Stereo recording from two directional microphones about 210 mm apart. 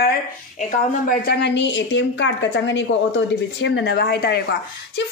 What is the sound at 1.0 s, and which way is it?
A woman's voice, 50° left (ahead or behind).